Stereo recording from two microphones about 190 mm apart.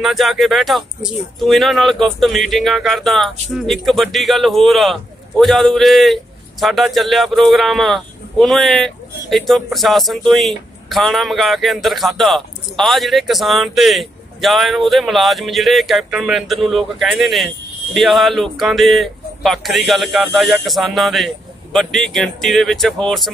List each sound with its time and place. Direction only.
0.0 s a man's voice: centre (ahead or behind)